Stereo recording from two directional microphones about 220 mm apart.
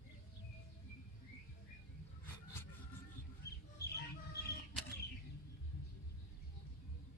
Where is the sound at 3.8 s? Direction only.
45° left (ahead or behind).